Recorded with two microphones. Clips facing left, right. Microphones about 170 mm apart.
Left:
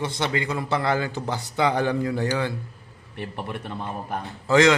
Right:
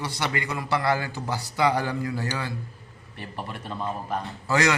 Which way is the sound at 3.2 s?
60° left (ahead or behind).